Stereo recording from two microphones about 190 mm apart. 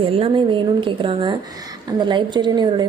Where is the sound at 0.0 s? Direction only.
25° right (ahead or behind).